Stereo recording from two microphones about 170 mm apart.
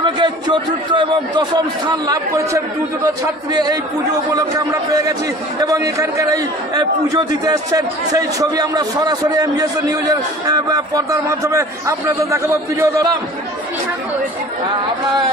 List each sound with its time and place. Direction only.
0.0 s a man's voice: 25° right (ahead or behind)
4.3 s a man's voice: 20° right (ahead or behind)